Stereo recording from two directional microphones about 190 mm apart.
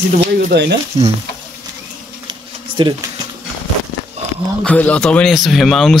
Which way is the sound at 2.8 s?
25° right (ahead or behind).